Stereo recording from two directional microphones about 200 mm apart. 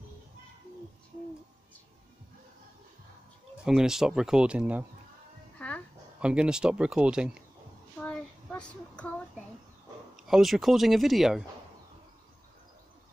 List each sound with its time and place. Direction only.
3.6 s speech: centre (ahead or behind)
5.6 s a sound: 5° left (ahead or behind)
6.2 s speech: 5° right (ahead or behind)
8.0 s child singing: 5° left (ahead or behind)
10.1 s speech: centre (ahead or behind)